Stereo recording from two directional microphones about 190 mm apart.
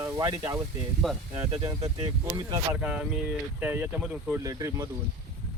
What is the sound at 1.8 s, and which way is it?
Speech, 25° right (ahead or behind).